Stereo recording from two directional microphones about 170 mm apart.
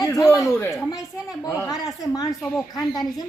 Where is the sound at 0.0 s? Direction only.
20° left (ahead or behind).